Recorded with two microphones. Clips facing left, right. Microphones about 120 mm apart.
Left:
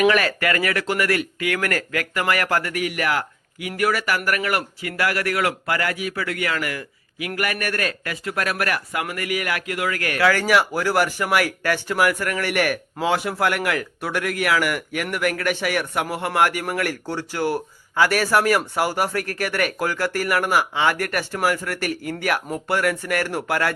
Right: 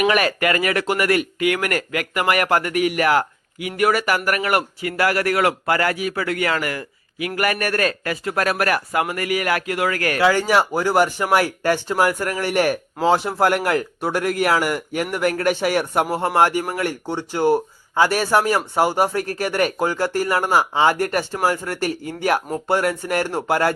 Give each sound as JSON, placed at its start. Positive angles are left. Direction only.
{"t": 0.0, "sound": "speech", "side_deg": -20}
{"t": 10.2, "sound": "a man's voice", "side_deg": -25}